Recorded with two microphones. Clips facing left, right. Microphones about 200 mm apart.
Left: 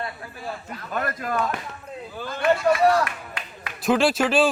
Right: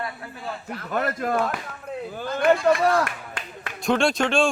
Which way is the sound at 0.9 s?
45° right (ahead or behind).